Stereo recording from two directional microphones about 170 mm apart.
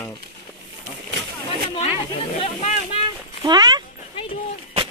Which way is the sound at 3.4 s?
25° right (ahead or behind).